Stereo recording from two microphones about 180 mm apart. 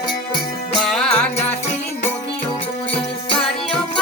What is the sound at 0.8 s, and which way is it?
Music, 5° left (ahead or behind).